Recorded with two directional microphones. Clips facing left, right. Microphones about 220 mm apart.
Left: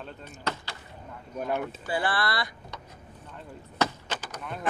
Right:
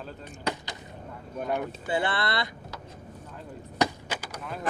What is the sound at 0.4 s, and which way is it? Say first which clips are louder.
Speech: right 2 dB; 15° right (ahead or behind).